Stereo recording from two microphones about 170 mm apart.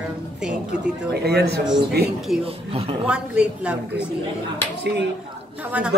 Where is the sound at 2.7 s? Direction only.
35° right (ahead or behind).